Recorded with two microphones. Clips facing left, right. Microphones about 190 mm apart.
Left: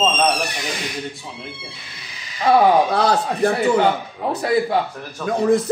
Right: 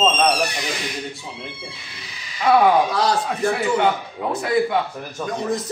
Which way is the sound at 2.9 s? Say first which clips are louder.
Left 3 dB; 55° left (ahead or behind).